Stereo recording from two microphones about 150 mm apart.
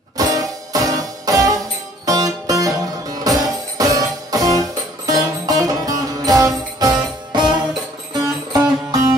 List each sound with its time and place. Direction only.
0.2 s music: 25° right (ahead or behind)